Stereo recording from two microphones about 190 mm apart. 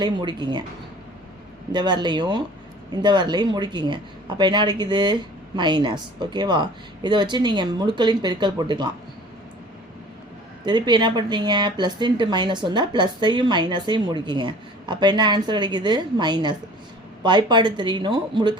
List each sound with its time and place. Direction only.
0.0 s speech: 25° right (ahead or behind)
1.7 s speech: 25° right (ahead or behind)
10.7 s speech: 25° right (ahead or behind)